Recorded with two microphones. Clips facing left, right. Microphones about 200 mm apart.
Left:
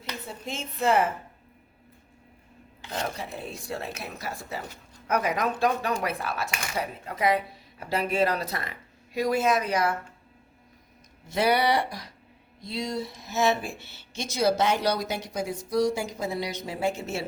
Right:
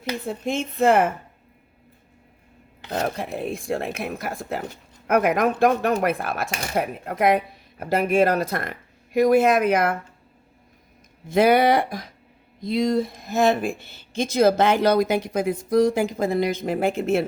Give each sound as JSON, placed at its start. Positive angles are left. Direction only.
{"t": 0.3, "sound": "speech", "side_deg": -55}
{"t": 2.9, "sound": "speech", "side_deg": -55}
{"t": 6.7, "sound": "speech", "side_deg": -60}
{"t": 11.3, "sound": "speech", "side_deg": -50}
{"t": 15.8, "sound": "speech", "side_deg": -90}
{"t": 16.0, "sound": "speech", "side_deg": -55}